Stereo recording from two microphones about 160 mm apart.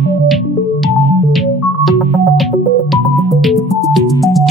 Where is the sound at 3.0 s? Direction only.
20° left (ahead or behind).